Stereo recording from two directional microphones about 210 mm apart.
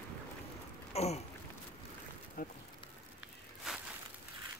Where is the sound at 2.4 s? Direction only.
45° left (ahead or behind).